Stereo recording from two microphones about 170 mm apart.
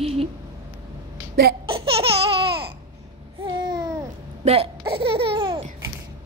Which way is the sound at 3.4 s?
25° right (ahead or behind).